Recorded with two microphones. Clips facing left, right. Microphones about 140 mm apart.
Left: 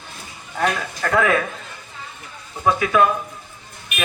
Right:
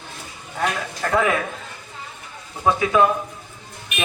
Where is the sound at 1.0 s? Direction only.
15° right (ahead or behind).